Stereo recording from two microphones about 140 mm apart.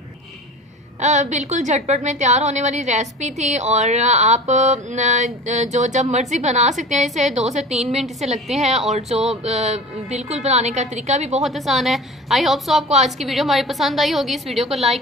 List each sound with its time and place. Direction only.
1.0 s a woman's voice: 60° right (ahead or behind)
11.4 s a woman's voice: centre (ahead or behind)
12.8 s a woman's voice: 50° right (ahead or behind)
13.2 s a woman's voice: centre (ahead or behind)